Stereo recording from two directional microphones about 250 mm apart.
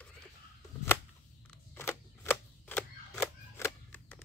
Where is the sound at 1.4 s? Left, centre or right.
Centre.